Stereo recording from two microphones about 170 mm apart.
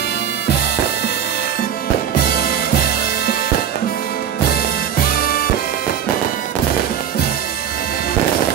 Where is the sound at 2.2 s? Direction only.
65° left (ahead or behind).